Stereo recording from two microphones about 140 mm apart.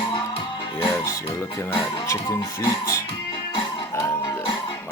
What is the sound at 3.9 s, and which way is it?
Music, 20° left (ahead or behind).